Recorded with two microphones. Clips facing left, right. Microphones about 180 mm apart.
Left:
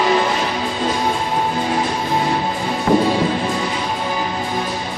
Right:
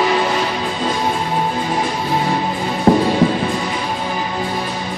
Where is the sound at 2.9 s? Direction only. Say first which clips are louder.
Right 3 dB; 35° right (ahead or behind).